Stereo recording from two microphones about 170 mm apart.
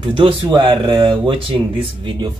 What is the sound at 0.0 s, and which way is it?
Speech, 30° right (ahead or behind).